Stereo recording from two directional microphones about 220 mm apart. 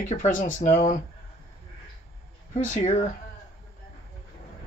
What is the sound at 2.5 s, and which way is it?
Speech, 30° left (ahead or behind).